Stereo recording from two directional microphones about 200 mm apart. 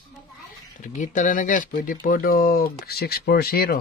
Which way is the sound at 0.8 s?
40° left (ahead or behind).